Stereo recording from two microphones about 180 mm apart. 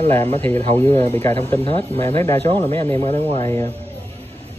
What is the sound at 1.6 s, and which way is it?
Speech, 30° left (ahead or behind).